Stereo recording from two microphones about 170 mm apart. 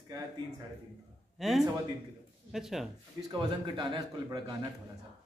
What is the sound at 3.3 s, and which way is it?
A man's voice, 25° right (ahead or behind).